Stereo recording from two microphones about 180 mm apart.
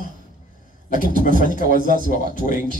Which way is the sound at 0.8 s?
50° left (ahead or behind).